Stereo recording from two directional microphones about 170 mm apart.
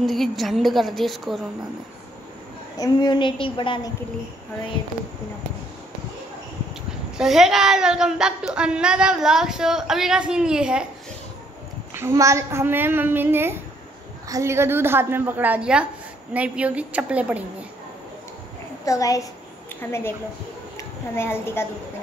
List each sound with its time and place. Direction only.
0.0 s speech: centre (ahead or behind)
2.8 s a woman's voice: 25° left (ahead or behind)
7.2 s speech: centre (ahead or behind)
11.9 s a child's voice: 15° right (ahead or behind)
18.9 s a woman's voice: 20° left (ahead or behind)